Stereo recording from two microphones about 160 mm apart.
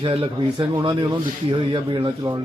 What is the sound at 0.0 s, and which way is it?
Speech, 35° right (ahead or behind).